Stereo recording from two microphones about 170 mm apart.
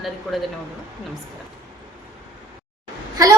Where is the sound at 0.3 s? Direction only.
Centre (ahead or behind).